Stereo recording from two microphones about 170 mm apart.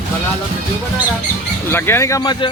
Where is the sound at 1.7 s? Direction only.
15° left (ahead or behind).